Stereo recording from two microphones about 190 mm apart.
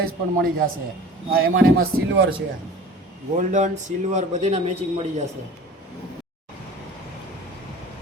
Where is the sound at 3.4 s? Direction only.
40° right (ahead or behind).